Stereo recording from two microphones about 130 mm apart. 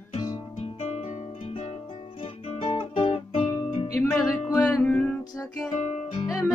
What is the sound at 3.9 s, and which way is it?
Music, 15° left (ahead or behind).